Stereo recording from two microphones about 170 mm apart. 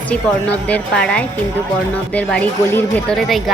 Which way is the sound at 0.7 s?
5° left (ahead or behind).